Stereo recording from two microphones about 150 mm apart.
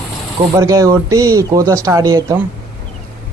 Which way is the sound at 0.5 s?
20° right (ahead or behind).